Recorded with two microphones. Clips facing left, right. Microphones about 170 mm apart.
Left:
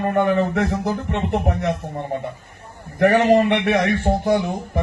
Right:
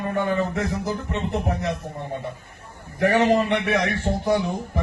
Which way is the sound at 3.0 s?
60° left (ahead or behind).